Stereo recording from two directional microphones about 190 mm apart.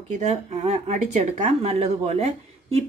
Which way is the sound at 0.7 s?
35° right (ahead or behind).